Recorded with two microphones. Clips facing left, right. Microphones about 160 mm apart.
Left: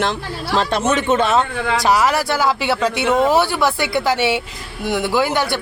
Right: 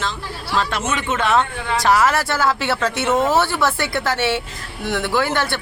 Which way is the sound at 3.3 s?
10° left (ahead or behind).